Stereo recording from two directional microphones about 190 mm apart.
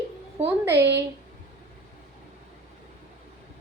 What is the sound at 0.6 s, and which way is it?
Speech, 10° right (ahead or behind).